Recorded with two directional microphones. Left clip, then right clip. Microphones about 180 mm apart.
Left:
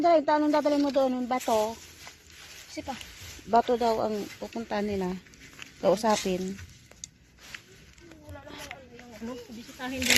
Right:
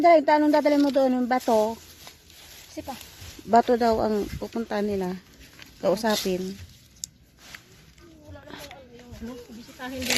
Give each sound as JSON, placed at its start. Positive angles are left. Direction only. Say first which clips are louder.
{"t": 0.0, "sound": "speech", "louder": "right 5 dB", "side_deg": -30}
{"t": 2.8, "sound": "speech", "louder": "right 1 dB", "side_deg": 50}
{"t": 3.5, "sound": "speech", "louder": "right 4 dB", "side_deg": -25}
{"t": 4.7, "sound": "speech", "louder": "right 3 dB", "side_deg": -15}
{"t": 5.8, "sound": "speech", "louder": "even", "side_deg": 0}
{"t": 9.7, "sound": "speech", "louder": "left 2 dB", "side_deg": 45}